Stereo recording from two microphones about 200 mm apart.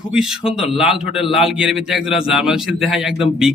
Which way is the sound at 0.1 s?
5° right (ahead or behind).